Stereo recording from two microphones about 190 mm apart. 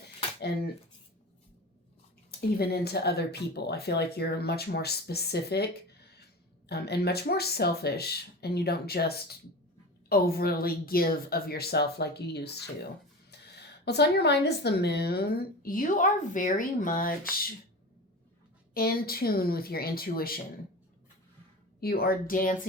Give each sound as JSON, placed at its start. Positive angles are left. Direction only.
{"t": 2.6, "sound": "speech", "side_deg": 55}
{"t": 18.7, "sound": "speech", "side_deg": 50}
{"t": 21.8, "sound": "speech", "side_deg": 55}